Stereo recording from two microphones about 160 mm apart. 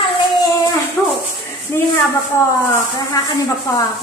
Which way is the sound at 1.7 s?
15° left (ahead or behind).